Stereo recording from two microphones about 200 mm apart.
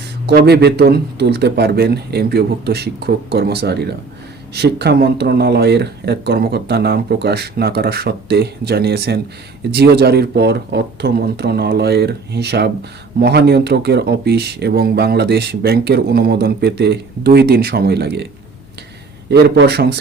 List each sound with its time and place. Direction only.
0.3 s speech: 50° right (ahead or behind)
19.3 s speech: 55° right (ahead or behind)